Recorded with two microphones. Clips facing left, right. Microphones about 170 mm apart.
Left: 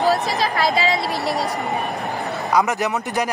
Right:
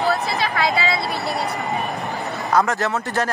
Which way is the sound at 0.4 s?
35° left (ahead or behind).